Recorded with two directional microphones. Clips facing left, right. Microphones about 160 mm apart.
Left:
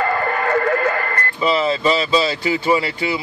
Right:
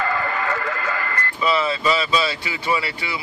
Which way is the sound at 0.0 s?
45° left (ahead or behind).